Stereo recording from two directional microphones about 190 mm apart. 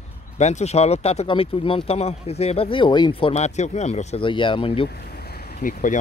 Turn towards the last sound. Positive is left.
turn(degrees=45)  # may be behind; listen again after turning